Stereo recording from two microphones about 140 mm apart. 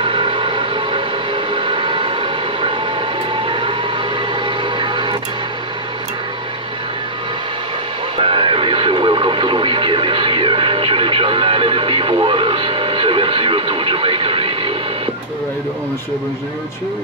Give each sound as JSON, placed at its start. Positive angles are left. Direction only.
{"t": 0.0, "sound": "train", "side_deg": -40}
{"t": 3.4, "sound": "vehicle", "side_deg": -40}
{"t": 4.7, "sound": "music", "side_deg": -35}
{"t": 8.2, "sound": "radio", "side_deg": -40}